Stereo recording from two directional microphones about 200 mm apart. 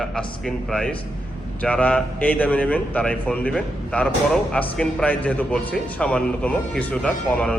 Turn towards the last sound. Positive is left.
turn(degrees=5)  # may be behind; listen again after turning